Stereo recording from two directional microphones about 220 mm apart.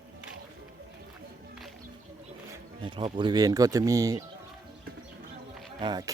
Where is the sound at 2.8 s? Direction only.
20° right (ahead or behind).